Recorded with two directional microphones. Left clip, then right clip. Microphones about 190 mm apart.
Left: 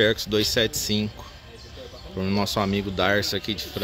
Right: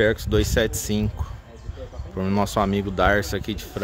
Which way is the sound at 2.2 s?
5° right (ahead or behind).